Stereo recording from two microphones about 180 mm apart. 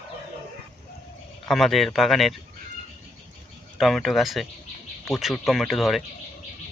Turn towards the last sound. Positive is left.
turn(degrees=0)  # may be behind; listen again after turning